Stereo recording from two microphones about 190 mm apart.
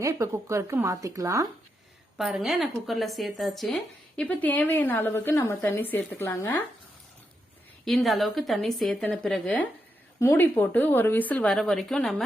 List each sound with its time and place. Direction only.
0.0 s a woman's voice: 15° right (ahead or behind)
2.1 s a woman's voice: centre (ahead or behind); by 6.5 s 15° left (ahead or behind)
7.9 s a woman's voice: centre (ahead or behind)